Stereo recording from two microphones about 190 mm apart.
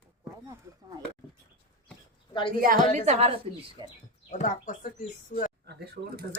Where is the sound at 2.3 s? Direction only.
25° left (ahead or behind).